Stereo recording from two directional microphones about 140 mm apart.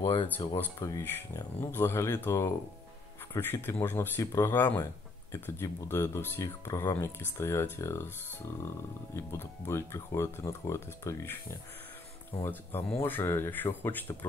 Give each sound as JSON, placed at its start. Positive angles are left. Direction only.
{"t": 0.0, "sound": "speech", "side_deg": 35}
{"t": 0.7, "sound": "speech", "side_deg": 20}
{"t": 13.0, "sound": "speech", "side_deg": 15}